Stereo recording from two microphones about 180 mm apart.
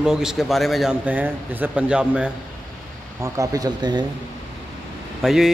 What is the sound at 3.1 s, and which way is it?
Speech, 20° right (ahead or behind).